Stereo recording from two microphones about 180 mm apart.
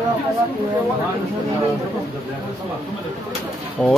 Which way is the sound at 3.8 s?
Centre (ahead or behind).